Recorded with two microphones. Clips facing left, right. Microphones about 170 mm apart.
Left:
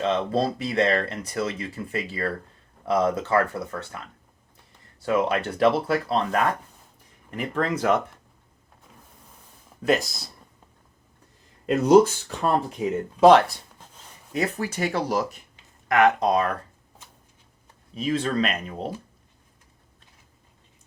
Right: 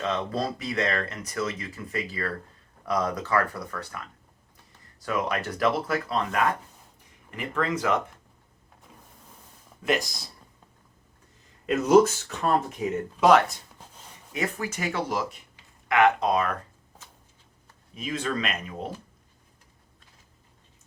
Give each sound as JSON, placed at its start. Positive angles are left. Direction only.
{"t": 0.0, "sound": "speech", "side_deg": 30}
{"t": 11.6, "sound": "speech", "side_deg": 35}
{"t": 17.9, "sound": "speech", "side_deg": 30}